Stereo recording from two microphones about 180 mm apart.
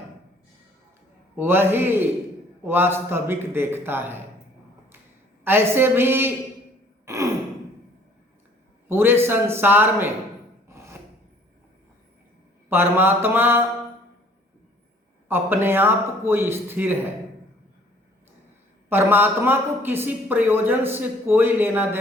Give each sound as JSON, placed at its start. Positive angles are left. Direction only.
{"t": 1.4, "sound": "a man's voice", "side_deg": -10}
{"t": 5.5, "sound": "a man's voice", "side_deg": -10}
{"t": 7.0, "sound": "sigh", "side_deg": -15}
{"t": 8.9, "sound": "a man's voice", "side_deg": -15}
{"t": 10.7, "sound": "filing", "side_deg": -15}
{"t": 12.6, "sound": "a man's voice", "side_deg": -10}
{"t": 15.3, "sound": "a man's voice", "side_deg": -10}
{"t": 18.9, "sound": "a man's voice", "side_deg": -10}